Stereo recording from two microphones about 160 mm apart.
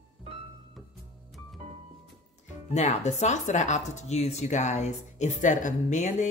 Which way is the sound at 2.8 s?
45° left (ahead or behind).